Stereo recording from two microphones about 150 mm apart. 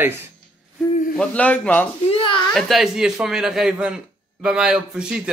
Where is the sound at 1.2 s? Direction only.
10° left (ahead or behind).